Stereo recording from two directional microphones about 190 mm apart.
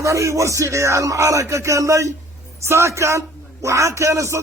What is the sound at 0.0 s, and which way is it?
A man's voice, 15° right (ahead or behind).